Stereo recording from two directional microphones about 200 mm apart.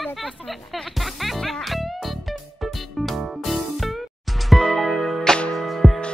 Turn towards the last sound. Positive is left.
turn(degrees=0)  # may be behind; listen again after turning